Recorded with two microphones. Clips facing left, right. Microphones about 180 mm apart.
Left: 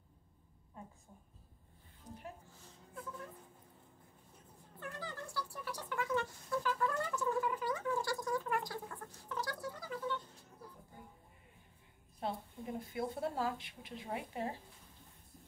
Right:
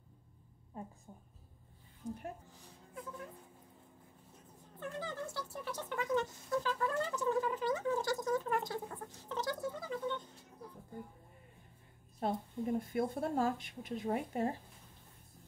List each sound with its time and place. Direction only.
2.9 s a sound: 10° right (ahead or behind)
4.7 s speech: 20° right (ahead or behind)
12.2 s speech: 50° right (ahead or behind)